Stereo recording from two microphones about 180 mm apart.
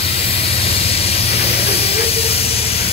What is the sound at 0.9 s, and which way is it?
Hiss, 35° left (ahead or behind).